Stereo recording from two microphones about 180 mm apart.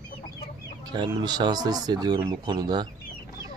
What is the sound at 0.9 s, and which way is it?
Speech, 20° right (ahead or behind).